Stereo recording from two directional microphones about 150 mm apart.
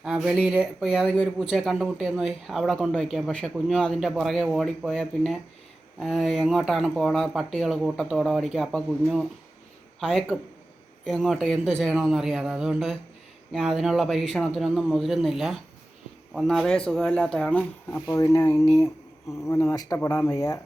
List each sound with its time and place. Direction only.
0.0 s a man's voice: 5° right (ahead or behind); by 18.5 s 25° left (ahead or behind)
19.7 s speech: 25° left (ahead or behind)